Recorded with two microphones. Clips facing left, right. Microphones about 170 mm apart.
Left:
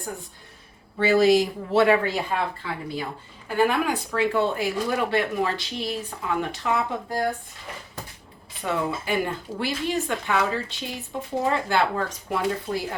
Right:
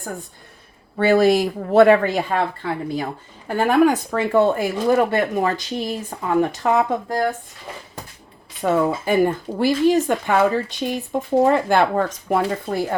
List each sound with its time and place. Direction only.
0.9 s speech: 55° right (ahead or behind)
8.6 s speech: 45° right (ahead or behind)